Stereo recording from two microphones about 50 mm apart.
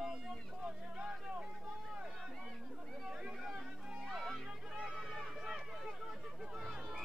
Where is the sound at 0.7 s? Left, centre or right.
Centre.